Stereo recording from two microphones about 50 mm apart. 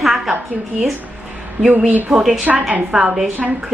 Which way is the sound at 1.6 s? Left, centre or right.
Right.